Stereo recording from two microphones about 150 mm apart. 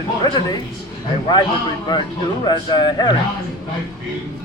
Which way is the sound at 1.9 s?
30° left (ahead or behind).